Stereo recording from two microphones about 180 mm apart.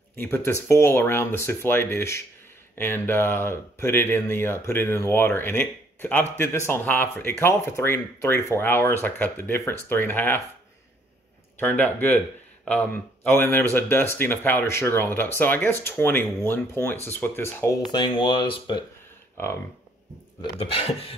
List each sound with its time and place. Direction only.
0.2 s speech: 15° left (ahead or behind)
11.6 s speech: 10° left (ahead or behind)
17.9 s speech: 25° left (ahead or behind)
19.4 s speech: 15° left (ahead or behind)
20.5 s speech: 35° left (ahead or behind)